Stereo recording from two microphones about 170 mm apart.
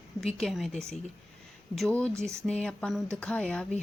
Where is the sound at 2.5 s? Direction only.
5° left (ahead or behind).